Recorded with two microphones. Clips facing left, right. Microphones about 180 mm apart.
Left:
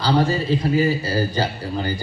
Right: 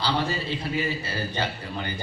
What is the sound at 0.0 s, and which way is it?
A man's voice, 40° left (ahead or behind).